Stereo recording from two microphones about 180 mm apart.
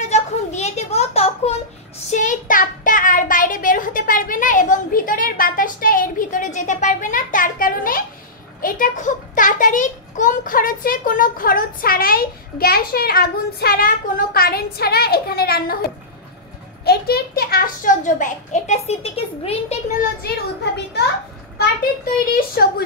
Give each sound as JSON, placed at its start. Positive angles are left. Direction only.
{"t": 0.1, "sound": "a sound", "side_deg": 40}
{"t": 8.5, "sound": "a child's voice", "side_deg": 50}
{"t": 16.8, "sound": "a child's voice", "side_deg": 60}
{"t": 22.2, "sound": "speech", "side_deg": 55}